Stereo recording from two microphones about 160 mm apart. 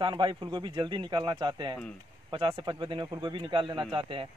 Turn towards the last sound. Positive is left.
turn(degrees=-35)  # may be behind; listen again after turning